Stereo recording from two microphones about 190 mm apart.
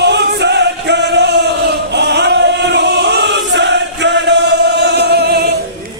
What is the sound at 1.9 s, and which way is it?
Chant, 65° right (ahead or behind).